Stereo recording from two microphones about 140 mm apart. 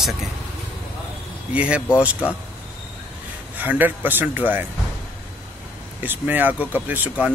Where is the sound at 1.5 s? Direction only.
10° right (ahead or behind).